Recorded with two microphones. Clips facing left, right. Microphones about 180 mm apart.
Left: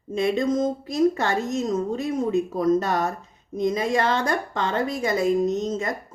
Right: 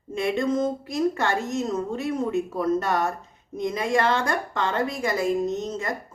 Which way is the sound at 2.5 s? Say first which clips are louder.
Left 2 dB; 20° left (ahead or behind).